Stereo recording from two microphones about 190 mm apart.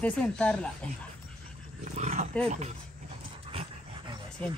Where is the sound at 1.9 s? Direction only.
35° right (ahead or behind).